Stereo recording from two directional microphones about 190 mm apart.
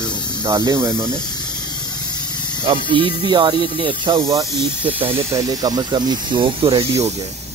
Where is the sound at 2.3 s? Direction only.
25° left (ahead or behind).